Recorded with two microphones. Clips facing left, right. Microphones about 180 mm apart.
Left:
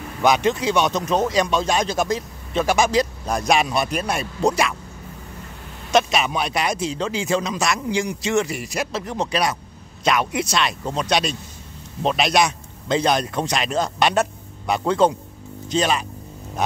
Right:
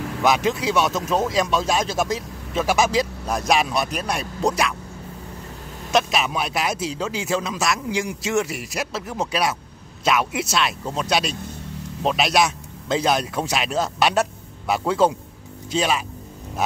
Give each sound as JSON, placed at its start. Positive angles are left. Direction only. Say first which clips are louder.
{"t": 0.2, "sound": "speech", "louder": "left 2 dB", "side_deg": 0}
{"t": 5.9, "sound": "speech", "louder": "left 2 dB", "side_deg": 0}